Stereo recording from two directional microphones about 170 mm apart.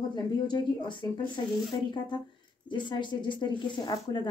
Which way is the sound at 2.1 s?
25° left (ahead or behind).